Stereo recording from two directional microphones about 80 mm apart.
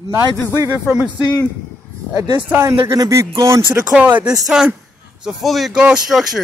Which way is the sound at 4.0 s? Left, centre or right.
Centre.